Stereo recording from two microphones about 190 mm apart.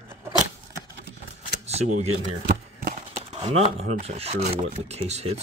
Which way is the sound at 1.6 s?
35° right (ahead or behind).